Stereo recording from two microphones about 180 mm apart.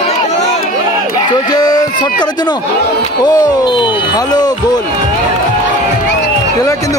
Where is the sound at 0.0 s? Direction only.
35° left (ahead or behind).